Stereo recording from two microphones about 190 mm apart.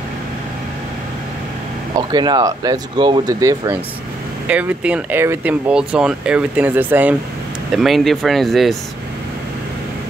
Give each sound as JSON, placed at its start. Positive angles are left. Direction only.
{"t": 2.0, "sound": "speech", "side_deg": -20}
{"t": 4.5, "sound": "speech", "side_deg": -5}